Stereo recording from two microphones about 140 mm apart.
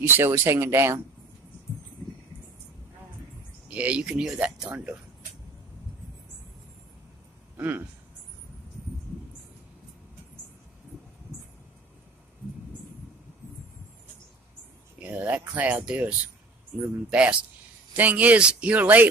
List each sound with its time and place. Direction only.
0.0 s speech: 15° right (ahead or behind)
3.7 s speech: 10° right (ahead or behind)
7.5 s speech: 15° right (ahead or behind)
15.0 s speech: 10° right (ahead or behind)